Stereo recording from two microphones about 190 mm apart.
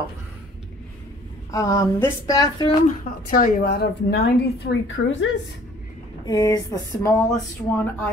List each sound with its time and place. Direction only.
1.5 s speech: 15° left (ahead or behind)
3.3 s a woman's voice: 50° left (ahead or behind); by 5.3 s 75° left (ahead or behind)
6.2 s speech: 20° left (ahead or behind)